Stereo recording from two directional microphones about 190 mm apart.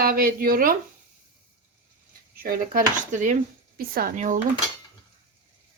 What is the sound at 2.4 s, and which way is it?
Speech, 50° right (ahead or behind).